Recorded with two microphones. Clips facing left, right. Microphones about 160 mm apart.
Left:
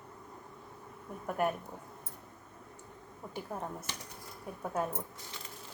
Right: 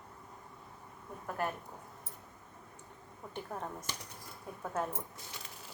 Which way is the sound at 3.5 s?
10° left (ahead or behind).